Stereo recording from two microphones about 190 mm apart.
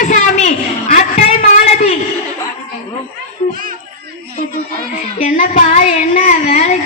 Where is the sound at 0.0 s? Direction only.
40° left (ahead or behind).